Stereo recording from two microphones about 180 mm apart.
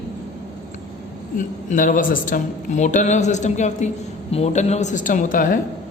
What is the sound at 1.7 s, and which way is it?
A man's voice, 45° left (ahead or behind).